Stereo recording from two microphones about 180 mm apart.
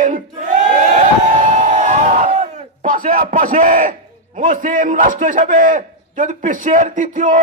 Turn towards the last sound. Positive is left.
turn(degrees=-45)  # may be behind; listen again after turning